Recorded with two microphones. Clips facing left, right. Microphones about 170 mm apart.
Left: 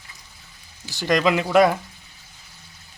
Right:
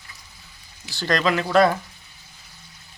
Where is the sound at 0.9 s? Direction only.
15° left (ahead or behind).